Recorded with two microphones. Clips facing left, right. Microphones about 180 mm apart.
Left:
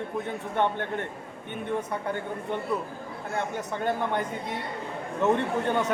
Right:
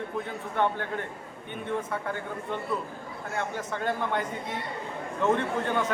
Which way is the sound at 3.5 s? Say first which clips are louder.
Left 2 dB; 15° left (ahead or behind).